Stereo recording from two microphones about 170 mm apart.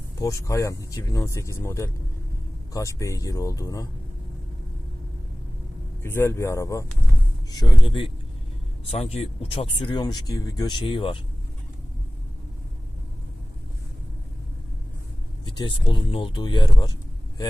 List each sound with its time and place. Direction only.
0.2 s speech: 20° left (ahead or behind)
6.0 s speech: 15° left (ahead or behind); by 11.2 s 30° left (ahead or behind)
15.4 s speech: 30° left (ahead or behind)